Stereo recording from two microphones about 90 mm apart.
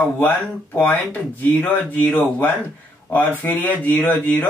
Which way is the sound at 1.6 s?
20° left (ahead or behind).